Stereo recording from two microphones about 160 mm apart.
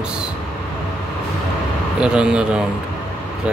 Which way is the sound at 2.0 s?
5° right (ahead or behind).